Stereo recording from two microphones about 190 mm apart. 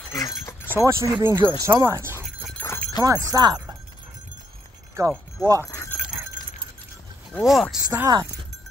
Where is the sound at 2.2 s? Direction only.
Centre (ahead or behind).